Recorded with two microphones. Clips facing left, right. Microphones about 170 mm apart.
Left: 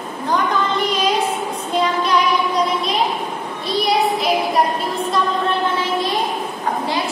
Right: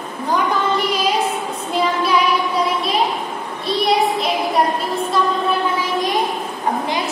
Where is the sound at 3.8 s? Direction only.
Centre (ahead or behind).